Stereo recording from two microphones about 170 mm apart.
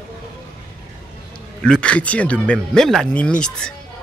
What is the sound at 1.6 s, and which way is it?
Speech, 5° left (ahead or behind).